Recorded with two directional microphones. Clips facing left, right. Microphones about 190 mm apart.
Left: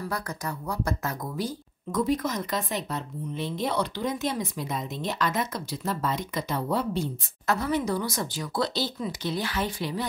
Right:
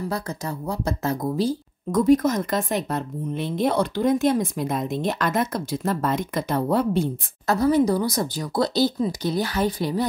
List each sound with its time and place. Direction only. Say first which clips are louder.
0.0 s speech: right 4 dB; 25° right (ahead or behind)
1.9 s speech: right 8 dB; 45° right (ahead or behind)
7.4 s speech: right 7 dB; 35° right (ahead or behind)